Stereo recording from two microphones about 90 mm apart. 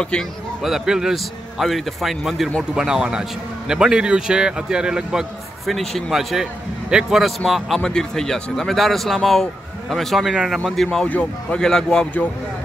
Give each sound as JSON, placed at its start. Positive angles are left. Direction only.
{"t": 0.6, "sound": "a man's voice", "side_deg": -5}
{"t": 11.1, "sound": "speech", "side_deg": 15}
{"t": 11.6, "sound": "speech", "side_deg": 5}